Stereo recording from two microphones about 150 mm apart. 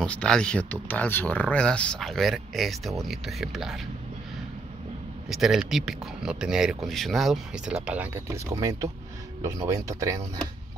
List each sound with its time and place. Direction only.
0.0 s speech: 5° left (ahead or behind)
5.3 s speech: centre (ahead or behind)
8.5 s speech: 20° right (ahead or behind)